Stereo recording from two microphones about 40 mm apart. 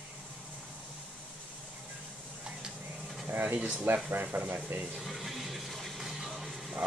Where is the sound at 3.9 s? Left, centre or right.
Right.